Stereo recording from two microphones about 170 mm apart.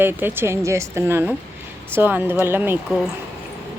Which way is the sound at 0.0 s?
10° right (ahead or behind).